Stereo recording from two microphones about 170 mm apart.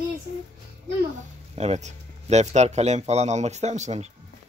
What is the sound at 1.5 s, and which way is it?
Speech, 40° right (ahead or behind).